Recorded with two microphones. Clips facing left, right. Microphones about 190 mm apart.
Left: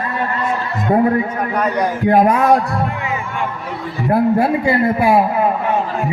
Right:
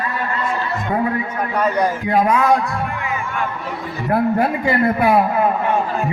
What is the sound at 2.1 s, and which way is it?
Music, 50° left (ahead or behind).